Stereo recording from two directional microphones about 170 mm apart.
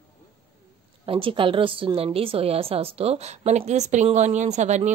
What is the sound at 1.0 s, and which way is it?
A woman's voice, 30° right (ahead or behind).